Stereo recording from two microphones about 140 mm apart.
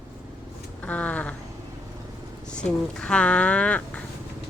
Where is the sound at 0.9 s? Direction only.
10° left (ahead or behind).